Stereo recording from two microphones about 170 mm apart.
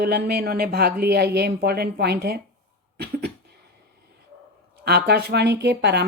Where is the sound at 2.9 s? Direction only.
70° right (ahead or behind).